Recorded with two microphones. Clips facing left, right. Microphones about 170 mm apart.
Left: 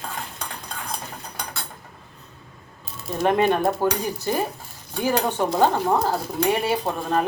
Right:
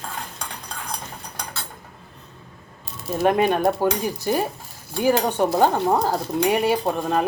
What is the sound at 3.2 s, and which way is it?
Speech, 15° right (ahead or behind).